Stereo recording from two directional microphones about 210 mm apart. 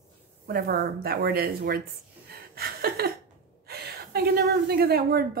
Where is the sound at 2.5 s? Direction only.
45° right (ahead or behind).